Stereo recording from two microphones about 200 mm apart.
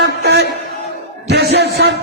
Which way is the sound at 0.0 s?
55° right (ahead or behind).